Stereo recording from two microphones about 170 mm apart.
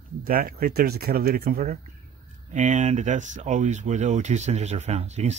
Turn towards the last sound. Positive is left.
turn(degrees=-40)  # may be behind; listen again after turning